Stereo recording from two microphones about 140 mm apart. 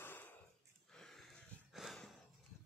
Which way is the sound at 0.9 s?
5° left (ahead or behind).